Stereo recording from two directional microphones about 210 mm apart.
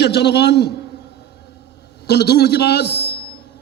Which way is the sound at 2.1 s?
50° left (ahead or behind).